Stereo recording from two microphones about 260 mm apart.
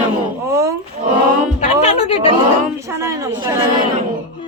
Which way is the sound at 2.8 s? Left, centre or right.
Centre.